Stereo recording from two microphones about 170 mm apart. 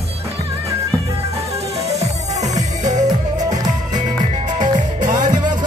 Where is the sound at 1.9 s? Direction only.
40° right (ahead or behind).